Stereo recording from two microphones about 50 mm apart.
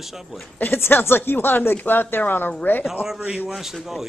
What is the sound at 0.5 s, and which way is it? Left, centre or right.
A woman's voice, left.